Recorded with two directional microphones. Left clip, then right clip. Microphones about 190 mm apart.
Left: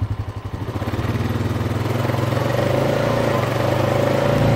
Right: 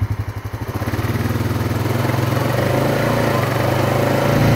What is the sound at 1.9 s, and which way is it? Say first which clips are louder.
Vehicle: right 1 dB; 40° right (ahead or behind).